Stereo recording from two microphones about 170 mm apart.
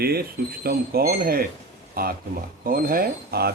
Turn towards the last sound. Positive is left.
turn(degrees=-65)  # may be behind; listen again after turning